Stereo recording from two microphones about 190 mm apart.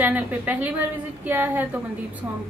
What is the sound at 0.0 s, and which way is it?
A woman's voice, 10° right (ahead or behind).